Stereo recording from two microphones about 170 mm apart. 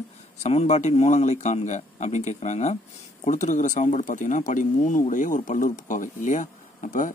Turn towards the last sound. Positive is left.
turn(degrees=50)  # may be behind; listen again after turning